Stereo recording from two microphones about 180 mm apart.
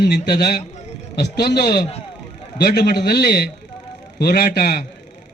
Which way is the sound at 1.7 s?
35° left (ahead or behind).